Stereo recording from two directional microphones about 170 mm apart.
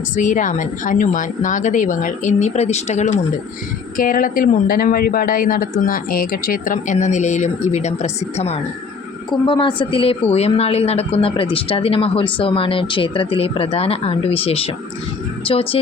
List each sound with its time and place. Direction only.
0.2 s a woman's voice: 50° left (ahead or behind)
3.9 s a woman's voice: 55° left (ahead or behind); by 15.8 s 35° left (ahead or behind)